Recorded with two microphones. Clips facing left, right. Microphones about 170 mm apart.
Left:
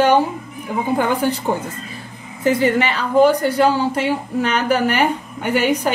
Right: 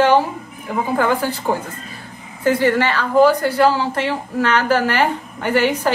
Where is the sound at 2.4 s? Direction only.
20° left (ahead or behind).